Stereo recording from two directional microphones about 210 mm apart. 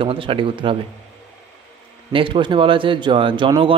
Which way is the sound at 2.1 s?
25° right (ahead or behind).